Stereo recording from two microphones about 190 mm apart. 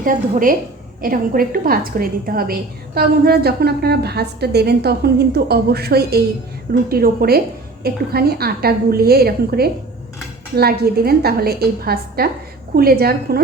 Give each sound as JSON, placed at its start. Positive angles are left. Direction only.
{"t": 0.0, "sound": "a woman's voice", "side_deg": -45}